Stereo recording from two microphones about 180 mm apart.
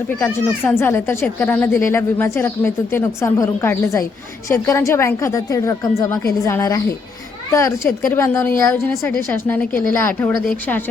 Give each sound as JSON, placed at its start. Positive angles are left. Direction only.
{"t": 0.1, "sound": "speech", "side_deg": 15}